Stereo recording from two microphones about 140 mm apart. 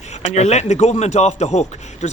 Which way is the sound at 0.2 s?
55° left (ahead or behind).